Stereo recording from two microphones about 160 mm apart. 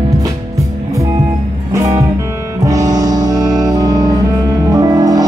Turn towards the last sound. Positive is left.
turn(degrees=-25)  # may be behind; listen again after turning